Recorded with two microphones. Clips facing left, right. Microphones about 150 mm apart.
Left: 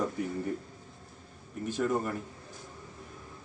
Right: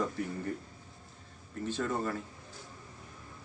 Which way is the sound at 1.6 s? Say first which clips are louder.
Left 3 dB; 15° left (ahead or behind).